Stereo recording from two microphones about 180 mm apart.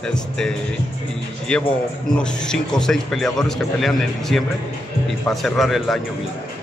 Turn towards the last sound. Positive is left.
turn(degrees=0)  # may be behind; listen again after turning